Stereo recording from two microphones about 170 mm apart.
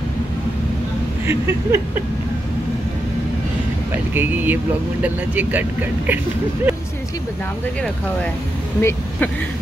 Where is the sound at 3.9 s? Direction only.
10° right (ahead or behind).